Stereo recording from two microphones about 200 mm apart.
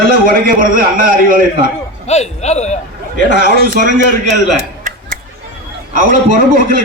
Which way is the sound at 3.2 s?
45° right (ahead or behind).